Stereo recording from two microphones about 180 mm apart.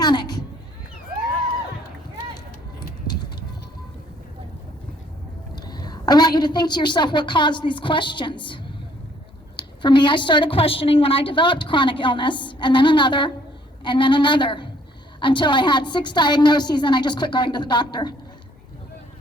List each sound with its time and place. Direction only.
0.0 s cat: 25° left (ahead or behind)
5.5 s a woman's voice: 20° left (ahead or behind)